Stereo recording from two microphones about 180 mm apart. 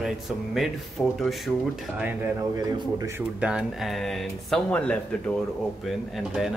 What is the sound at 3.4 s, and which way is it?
Speech, 5° right (ahead or behind).